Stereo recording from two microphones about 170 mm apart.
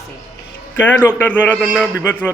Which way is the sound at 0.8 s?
10° left (ahead or behind).